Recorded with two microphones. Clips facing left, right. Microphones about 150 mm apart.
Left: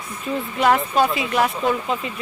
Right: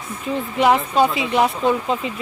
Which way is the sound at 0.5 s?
20° right (ahead or behind).